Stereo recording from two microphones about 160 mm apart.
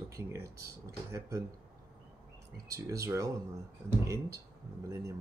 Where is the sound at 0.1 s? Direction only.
15° right (ahead or behind).